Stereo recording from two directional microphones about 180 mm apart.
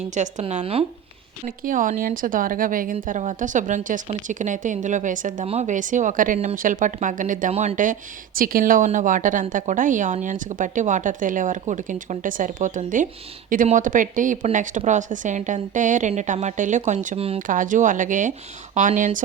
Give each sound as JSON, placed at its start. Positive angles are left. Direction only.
{"t": 0.1, "sound": "a woman's voice", "side_deg": -40}
{"t": 1.5, "sound": "speech", "side_deg": -50}
{"t": 17.4, "sound": "speech", "side_deg": -45}